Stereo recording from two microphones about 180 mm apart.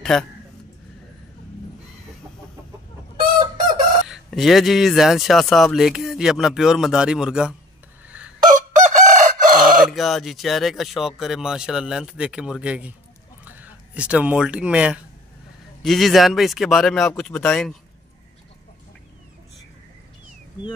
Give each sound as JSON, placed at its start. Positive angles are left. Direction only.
{"t": 0.0, "sound": "a man's voice", "side_deg": 5}
{"t": 3.2, "sound": "chicken", "side_deg": -50}
{"t": 4.1, "sound": "speech", "side_deg": 0}
{"t": 8.5, "sound": "chicken", "side_deg": -40}
{"t": 9.8, "sound": "speech", "side_deg": 0}